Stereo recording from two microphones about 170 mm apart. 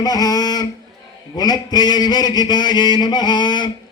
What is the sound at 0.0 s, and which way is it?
Mantra, 20° left (ahead or behind).